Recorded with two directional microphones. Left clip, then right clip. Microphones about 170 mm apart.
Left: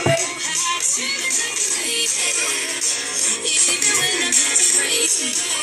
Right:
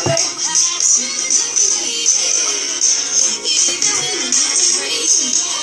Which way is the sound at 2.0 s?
40° left (ahead or behind).